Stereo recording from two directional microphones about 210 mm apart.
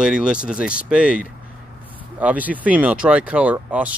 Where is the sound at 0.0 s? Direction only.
5° right (ahead or behind).